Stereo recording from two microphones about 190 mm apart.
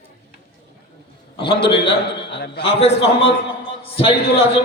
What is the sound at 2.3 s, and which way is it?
Speech, 65° left (ahead or behind).